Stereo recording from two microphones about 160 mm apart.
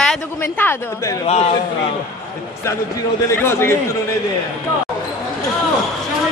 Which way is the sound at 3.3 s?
15° left (ahead or behind).